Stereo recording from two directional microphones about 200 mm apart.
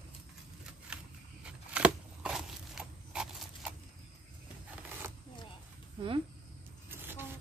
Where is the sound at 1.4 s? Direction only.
5° right (ahead or behind).